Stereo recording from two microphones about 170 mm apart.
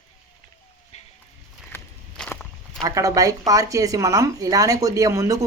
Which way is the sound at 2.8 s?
20° right (ahead or behind).